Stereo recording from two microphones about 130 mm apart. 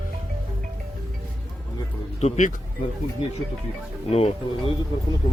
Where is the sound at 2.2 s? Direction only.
65° left (ahead or behind).